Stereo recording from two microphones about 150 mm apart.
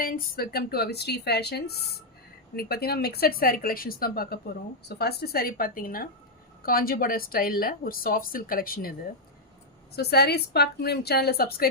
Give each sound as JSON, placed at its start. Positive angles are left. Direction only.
{"t": 0.0, "sound": "a woman's voice", "side_deg": 75}
{"t": 9.9, "sound": "speech", "side_deg": 90}